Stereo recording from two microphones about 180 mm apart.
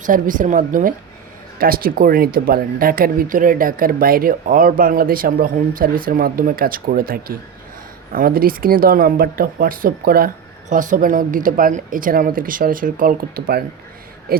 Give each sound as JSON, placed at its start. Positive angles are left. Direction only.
{"t": 0.0, "sound": "speech", "side_deg": -45}
{"t": 14.3, "sound": "hoot", "side_deg": -55}